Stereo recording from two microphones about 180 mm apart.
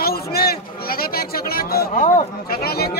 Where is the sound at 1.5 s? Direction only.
55° left (ahead or behind).